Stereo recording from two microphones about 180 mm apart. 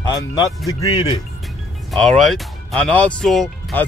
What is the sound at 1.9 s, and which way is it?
Speech, centre (ahead or behind).